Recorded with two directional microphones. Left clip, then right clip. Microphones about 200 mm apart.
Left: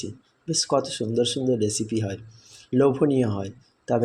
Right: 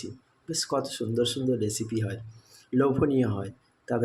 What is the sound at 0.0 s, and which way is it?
Speech, 15° left (ahead or behind).